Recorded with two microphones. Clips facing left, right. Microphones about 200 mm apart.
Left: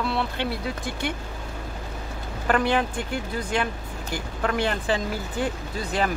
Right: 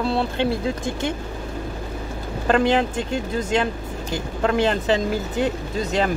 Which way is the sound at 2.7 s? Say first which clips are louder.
Right 4 dB; 25° right (ahead or behind).